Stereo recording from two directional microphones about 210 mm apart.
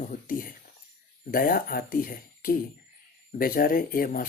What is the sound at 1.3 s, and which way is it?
Speech, 40° left (ahead or behind).